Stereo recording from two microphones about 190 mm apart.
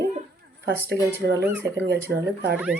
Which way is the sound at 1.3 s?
15° right (ahead or behind).